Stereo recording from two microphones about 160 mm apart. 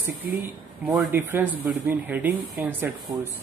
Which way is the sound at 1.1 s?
10° right (ahead or behind).